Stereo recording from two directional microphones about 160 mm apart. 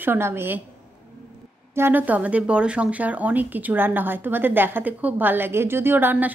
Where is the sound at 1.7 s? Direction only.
15° right (ahead or behind).